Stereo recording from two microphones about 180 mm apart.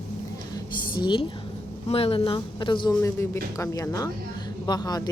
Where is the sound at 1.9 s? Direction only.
30° left (ahead or behind).